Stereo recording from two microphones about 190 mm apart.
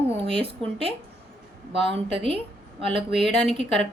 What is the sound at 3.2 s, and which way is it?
Speech, centre (ahead or behind).